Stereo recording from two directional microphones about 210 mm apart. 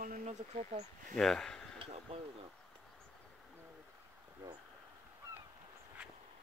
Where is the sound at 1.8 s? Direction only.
30° right (ahead or behind).